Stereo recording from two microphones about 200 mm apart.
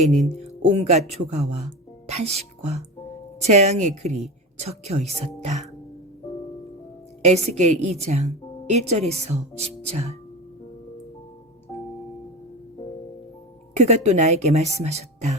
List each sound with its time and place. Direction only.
0.7 s speech: 30° right (ahead or behind)
7.2 s a woman's voice: 35° right (ahead or behind)
13.7 s speech: 35° right (ahead or behind)